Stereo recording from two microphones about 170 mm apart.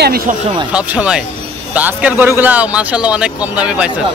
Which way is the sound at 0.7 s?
10° right (ahead or behind).